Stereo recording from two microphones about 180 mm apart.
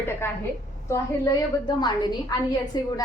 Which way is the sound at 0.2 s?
15° left (ahead or behind).